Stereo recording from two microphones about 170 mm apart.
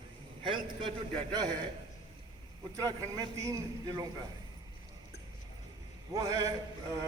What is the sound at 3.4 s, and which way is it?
Speech, 20° right (ahead or behind).